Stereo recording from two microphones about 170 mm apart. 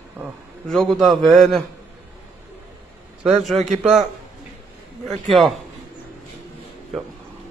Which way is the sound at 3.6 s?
40° right (ahead or behind).